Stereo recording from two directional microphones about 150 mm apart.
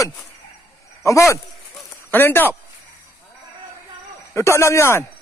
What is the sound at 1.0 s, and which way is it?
A man's voice, 20° left (ahead or behind).